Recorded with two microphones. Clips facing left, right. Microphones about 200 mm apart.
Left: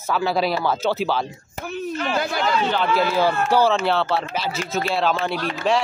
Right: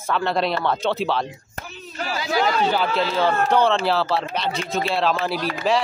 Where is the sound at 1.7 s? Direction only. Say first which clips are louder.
Left 6 dB; 55° left (ahead or behind).